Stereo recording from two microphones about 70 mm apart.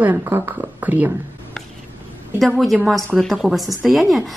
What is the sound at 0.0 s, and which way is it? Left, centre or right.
A woman's voice, right.